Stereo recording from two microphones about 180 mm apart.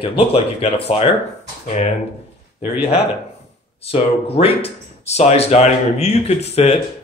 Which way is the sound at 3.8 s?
35° left (ahead or behind).